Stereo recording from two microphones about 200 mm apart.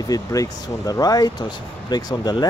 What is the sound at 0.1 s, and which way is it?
Speech, 15° left (ahead or behind).